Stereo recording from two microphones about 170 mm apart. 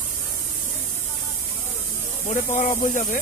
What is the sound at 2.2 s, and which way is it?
Speech, 45° left (ahead or behind).